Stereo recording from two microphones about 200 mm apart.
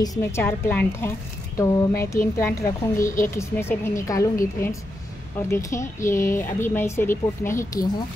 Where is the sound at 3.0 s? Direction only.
15° left (ahead or behind).